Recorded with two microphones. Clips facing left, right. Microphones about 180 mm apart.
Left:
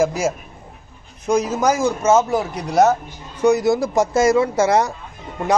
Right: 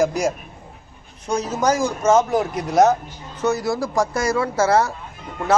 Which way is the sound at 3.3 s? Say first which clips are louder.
Left 6 dB; 15° left (ahead or behind).